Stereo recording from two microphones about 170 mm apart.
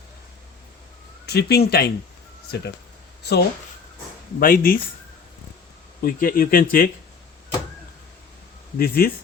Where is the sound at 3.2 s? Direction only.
70° left (ahead or behind).